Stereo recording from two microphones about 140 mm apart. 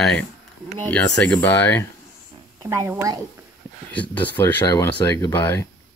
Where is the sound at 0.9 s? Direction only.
10° left (ahead or behind).